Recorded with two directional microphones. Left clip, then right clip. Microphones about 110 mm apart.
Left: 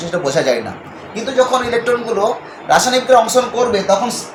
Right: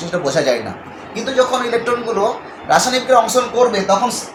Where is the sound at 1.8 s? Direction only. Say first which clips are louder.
Left 2 dB; 30° left (ahead or behind).